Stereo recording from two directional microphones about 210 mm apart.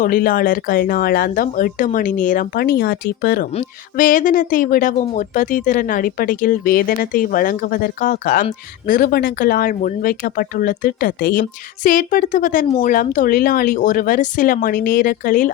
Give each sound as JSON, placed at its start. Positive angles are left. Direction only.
{"t": 0.0, "sound": "speech", "side_deg": 45}
{"t": 3.5, "sound": "speech", "side_deg": 35}